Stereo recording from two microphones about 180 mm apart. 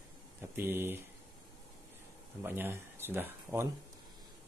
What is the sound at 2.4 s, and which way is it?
Speech, 10° right (ahead or behind).